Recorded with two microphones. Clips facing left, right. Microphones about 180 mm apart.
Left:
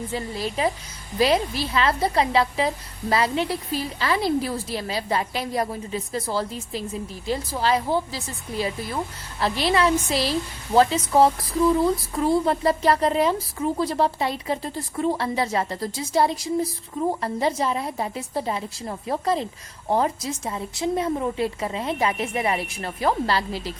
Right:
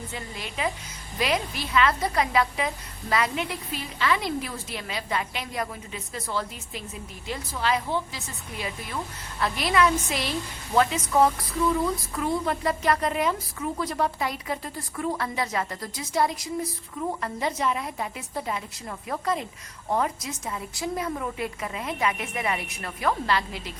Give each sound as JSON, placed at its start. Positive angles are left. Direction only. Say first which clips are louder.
{"t": 0.1, "sound": "a woman's voice", "louder": "left 8 dB", "side_deg": 35}